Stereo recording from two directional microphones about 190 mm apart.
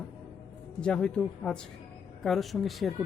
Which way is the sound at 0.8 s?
5° left (ahead or behind).